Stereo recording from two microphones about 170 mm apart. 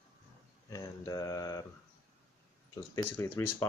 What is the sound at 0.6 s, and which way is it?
Speech, 20° left (ahead or behind).